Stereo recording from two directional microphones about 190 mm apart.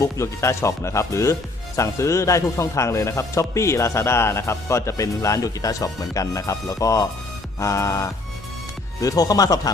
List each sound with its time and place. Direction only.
0.0 s speech: 15° left (ahead or behind)